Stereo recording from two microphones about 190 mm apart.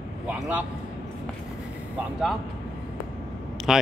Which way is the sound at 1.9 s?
Centre (ahead or behind).